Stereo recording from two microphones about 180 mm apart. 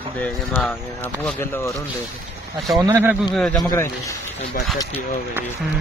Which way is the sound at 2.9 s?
10° right (ahead or behind).